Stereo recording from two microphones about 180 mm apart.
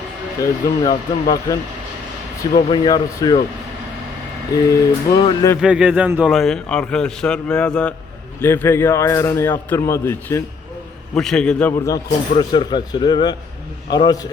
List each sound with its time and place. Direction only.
0.3 s speech: 20° left (ahead or behind)
2.6 s speech: 25° left (ahead or behind)
4.5 s speech: 20° left (ahead or behind)
5.5 s speech: 5° right (ahead or behind)
6.3 s a man's voice: centre (ahead or behind)
11.1 s a man's voice: 5° left (ahead or behind)
11.7 s speech: 15° left (ahead or behind)